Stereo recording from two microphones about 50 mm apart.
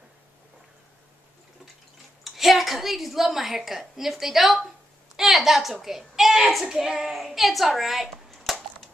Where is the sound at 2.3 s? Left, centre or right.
Centre.